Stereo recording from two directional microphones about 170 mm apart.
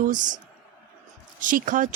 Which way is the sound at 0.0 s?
50° right (ahead or behind).